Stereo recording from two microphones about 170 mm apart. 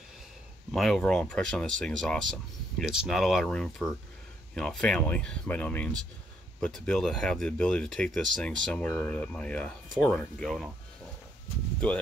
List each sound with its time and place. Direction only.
0.7 s speech: centre (ahead or behind)